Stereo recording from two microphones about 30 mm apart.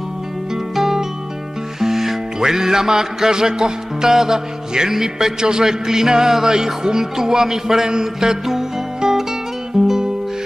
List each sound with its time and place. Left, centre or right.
0.7 s music: centre